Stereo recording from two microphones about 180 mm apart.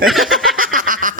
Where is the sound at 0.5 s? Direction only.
50° right (ahead or behind).